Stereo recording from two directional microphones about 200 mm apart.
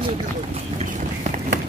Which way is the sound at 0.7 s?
35° right (ahead or behind).